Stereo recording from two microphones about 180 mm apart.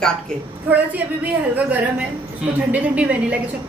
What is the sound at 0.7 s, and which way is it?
Speech, 10° right (ahead or behind).